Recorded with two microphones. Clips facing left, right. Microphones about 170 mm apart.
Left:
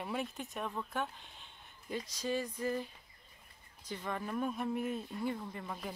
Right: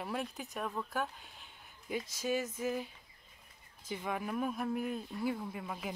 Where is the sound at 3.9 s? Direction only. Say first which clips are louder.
Right 1 dB; 10° right (ahead or behind).